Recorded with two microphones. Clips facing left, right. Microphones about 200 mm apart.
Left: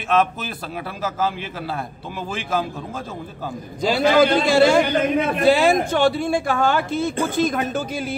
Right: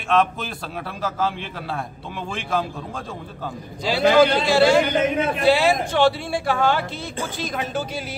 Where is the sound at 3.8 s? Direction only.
45° left (ahead or behind).